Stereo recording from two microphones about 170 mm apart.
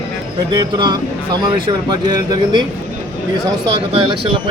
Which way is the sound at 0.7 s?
25° right (ahead or behind).